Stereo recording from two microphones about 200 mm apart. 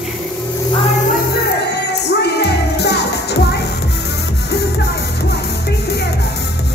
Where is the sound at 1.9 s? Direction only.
55° left (ahead or behind).